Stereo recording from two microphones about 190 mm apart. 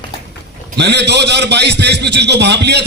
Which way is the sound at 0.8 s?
60° right (ahead or behind).